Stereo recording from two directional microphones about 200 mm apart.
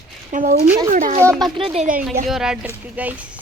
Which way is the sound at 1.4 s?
30° right (ahead or behind).